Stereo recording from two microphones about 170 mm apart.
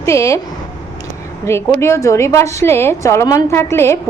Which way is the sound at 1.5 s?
15° left (ahead or behind).